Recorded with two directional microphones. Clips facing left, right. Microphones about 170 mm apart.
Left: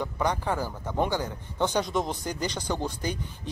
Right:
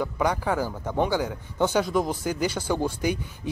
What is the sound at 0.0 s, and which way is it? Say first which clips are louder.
Speech: right 3 dB; 10° right (ahead or behind).